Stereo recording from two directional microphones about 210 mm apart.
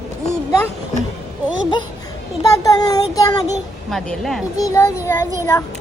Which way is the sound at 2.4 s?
15° left (ahead or behind).